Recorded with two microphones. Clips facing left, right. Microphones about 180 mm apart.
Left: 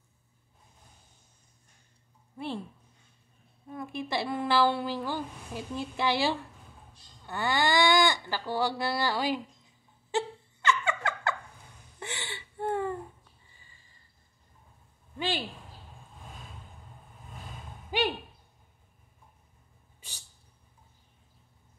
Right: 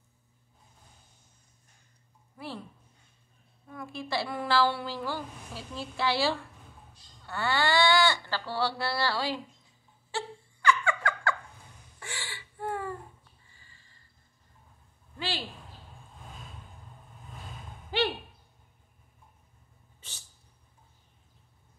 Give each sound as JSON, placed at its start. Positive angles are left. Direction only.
{"t": 2.3, "sound": "a woman's voice", "side_deg": 25}
{"t": 3.7, "sound": "a woman's voice", "side_deg": 20}
{"t": 10.1, "sound": "a sound", "side_deg": 25}
{"t": 15.1, "sound": "speech", "side_deg": 20}
{"t": 17.9, "sound": "a sound", "side_deg": 15}
{"t": 20.0, "sound": "cat", "side_deg": 10}